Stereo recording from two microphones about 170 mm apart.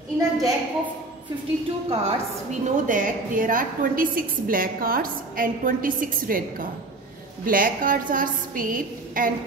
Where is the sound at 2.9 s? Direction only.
50° right (ahead or behind).